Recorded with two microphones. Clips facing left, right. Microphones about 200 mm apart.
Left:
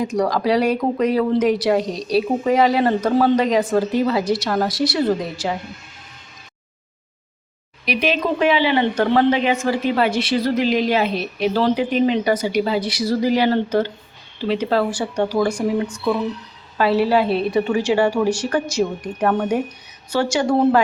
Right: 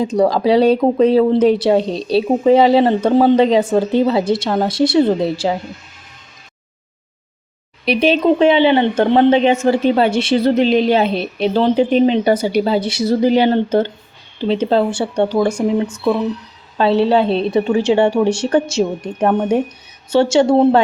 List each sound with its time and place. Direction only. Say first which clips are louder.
0.0 s speech: right 5 dB; 30° right (ahead or behind)
7.9 s speech: right 7 dB; 30° right (ahead or behind)